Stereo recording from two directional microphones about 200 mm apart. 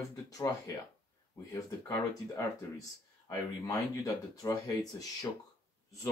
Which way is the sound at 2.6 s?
15° left (ahead or behind).